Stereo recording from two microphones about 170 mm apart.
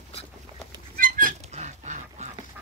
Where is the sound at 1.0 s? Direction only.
50° right (ahead or behind).